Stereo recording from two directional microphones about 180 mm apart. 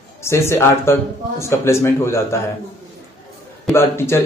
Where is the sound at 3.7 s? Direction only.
15° left (ahead or behind).